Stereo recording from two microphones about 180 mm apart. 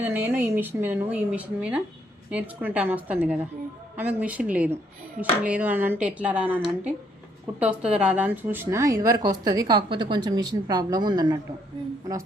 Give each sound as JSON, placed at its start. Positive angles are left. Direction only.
{"t": 0.0, "sound": "a woman's voice", "side_deg": -10}